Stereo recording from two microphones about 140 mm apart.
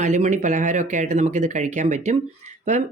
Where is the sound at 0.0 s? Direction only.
60° right (ahead or behind).